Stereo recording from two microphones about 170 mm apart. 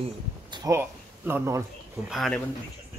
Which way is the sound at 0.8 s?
15° right (ahead or behind).